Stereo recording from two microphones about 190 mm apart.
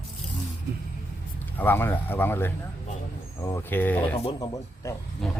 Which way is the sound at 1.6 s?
10° left (ahead or behind).